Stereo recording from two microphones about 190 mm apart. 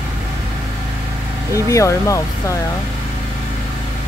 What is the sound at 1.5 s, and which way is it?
Speech, 15° left (ahead or behind).